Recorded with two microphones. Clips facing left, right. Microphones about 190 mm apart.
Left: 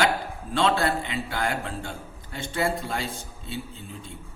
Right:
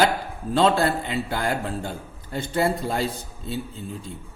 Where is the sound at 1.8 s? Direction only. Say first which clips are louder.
Right 4 dB; 40° right (ahead or behind).